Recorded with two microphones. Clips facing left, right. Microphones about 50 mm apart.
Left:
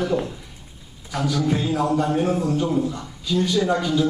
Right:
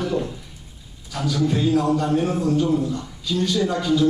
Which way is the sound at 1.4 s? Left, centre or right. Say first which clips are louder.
Right 5 dB; centre.